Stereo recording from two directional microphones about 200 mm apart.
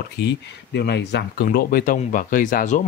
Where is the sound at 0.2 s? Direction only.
55° left (ahead or behind).